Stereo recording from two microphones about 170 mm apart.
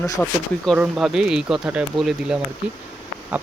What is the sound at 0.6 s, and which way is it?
Speech, centre (ahead or behind).